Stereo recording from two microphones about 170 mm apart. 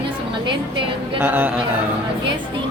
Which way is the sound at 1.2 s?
10° right (ahead or behind).